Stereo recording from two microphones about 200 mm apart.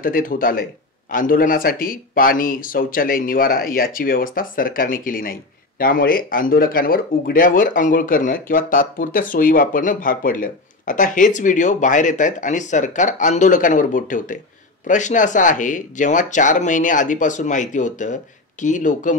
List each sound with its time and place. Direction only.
0.0 s speech: 45° left (ahead or behind)